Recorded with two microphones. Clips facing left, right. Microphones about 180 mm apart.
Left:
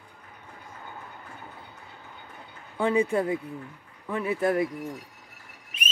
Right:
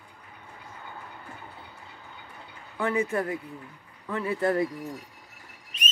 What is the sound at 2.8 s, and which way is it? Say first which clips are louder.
Speech: left 3 dB; 15° left (ahead or behind).